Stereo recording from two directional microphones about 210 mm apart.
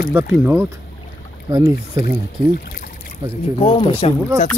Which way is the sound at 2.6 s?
45° left (ahead or behind).